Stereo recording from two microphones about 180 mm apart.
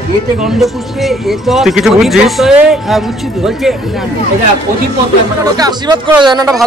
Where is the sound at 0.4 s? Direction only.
Centre (ahead or behind).